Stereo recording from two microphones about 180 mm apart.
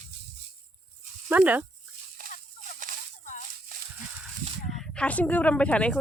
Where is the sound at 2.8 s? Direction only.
45° right (ahead or behind).